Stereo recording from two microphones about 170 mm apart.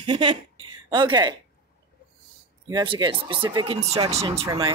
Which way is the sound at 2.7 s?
25° right (ahead or behind).